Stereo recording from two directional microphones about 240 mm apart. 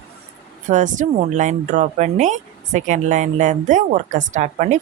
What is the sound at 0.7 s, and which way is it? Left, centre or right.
Speech, right.